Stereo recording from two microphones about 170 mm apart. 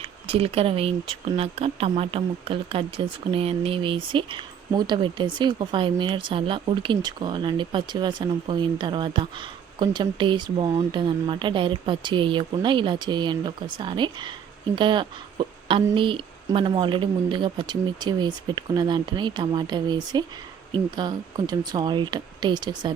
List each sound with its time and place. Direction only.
0.0 s speech: 35° right (ahead or behind)